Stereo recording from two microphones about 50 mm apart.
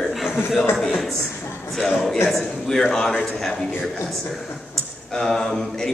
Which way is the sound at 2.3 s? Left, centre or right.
Centre.